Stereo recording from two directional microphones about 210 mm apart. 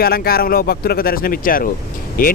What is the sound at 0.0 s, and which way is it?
A man's voice, 45° left (ahead or behind).